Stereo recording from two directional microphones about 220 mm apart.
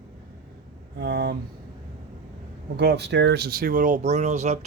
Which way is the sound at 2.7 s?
50° right (ahead or behind).